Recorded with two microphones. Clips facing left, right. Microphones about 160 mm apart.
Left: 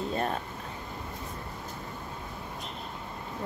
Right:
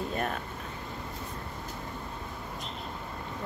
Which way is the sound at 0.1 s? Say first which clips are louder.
Left 2 dB; 30° left (ahead or behind).